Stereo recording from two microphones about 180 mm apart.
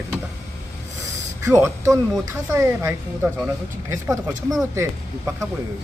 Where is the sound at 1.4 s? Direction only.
15° right (ahead or behind).